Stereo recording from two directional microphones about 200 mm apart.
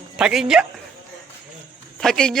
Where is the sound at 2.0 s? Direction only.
5° left (ahead or behind).